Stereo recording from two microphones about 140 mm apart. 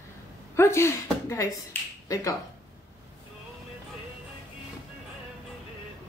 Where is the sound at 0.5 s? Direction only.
20° left (ahead or behind).